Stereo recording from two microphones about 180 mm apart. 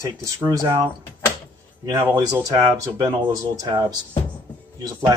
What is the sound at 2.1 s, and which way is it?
Speech, 20° right (ahead or behind).